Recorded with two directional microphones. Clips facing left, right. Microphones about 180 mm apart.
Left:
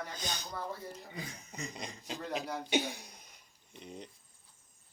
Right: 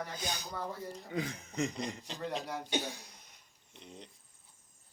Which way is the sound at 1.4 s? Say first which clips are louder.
Right 9 dB; 90° right.